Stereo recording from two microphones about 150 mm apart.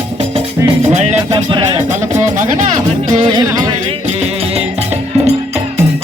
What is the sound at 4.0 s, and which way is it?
Music, 45° right (ahead or behind).